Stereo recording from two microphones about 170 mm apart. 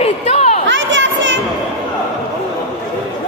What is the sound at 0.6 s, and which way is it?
Crowd, 90° right.